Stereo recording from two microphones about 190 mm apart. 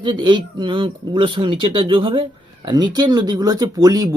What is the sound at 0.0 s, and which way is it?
Speech, 25° right (ahead or behind).